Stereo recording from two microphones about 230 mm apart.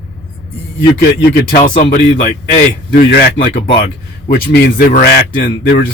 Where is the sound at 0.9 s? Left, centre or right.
Left.